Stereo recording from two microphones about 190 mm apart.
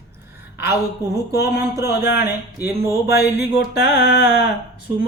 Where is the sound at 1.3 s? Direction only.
60° left (ahead or behind).